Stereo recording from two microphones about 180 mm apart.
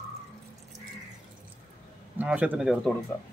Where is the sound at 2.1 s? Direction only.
10° right (ahead or behind).